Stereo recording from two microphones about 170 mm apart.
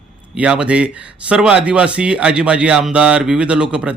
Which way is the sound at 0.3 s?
5° right (ahead or behind).